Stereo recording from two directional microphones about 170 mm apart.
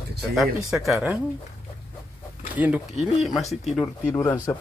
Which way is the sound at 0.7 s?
Centre (ahead or behind).